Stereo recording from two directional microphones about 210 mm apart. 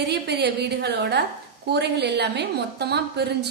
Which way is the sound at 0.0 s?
50° right (ahead or behind).